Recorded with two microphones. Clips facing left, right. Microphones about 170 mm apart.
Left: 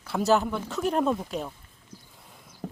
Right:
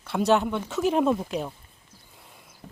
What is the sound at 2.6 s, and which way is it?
Horse, 65° left (ahead or behind).